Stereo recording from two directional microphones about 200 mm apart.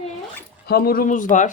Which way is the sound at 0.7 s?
50° left (ahead or behind).